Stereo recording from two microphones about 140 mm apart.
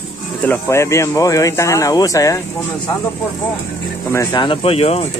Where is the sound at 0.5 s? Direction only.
20° left (ahead or behind).